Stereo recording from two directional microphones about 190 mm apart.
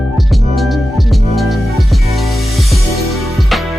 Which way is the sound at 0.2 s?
Centre (ahead or behind).